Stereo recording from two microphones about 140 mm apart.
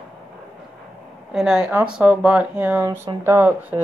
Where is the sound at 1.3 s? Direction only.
5° right (ahead or behind).